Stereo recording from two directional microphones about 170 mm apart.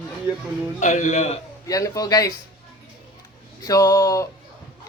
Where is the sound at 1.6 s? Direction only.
20° left (ahead or behind).